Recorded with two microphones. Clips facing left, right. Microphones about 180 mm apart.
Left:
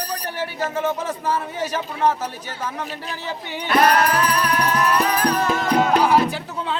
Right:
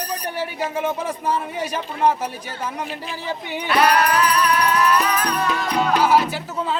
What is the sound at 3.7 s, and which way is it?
Music, 50° left (ahead or behind).